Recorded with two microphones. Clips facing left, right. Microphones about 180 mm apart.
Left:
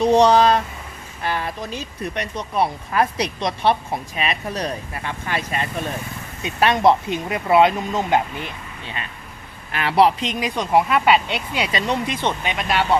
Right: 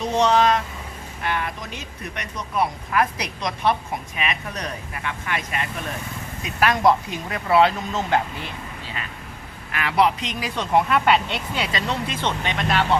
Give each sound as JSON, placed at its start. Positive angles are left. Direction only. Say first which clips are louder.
{"t": 0.0, "sound": "a sound", "louder": "left 5 dB", "side_deg": 35}
{"t": 1.2, "sound": "speech", "louder": "left 2 dB", "side_deg": 35}
{"t": 9.7, "sound": "speech", "louder": "left 4 dB", "side_deg": 30}
{"t": 10.5, "sound": "speech", "louder": "left 1 dB", "side_deg": 10}
{"t": 11.5, "sound": "speech", "louder": "left 4 dB", "side_deg": 15}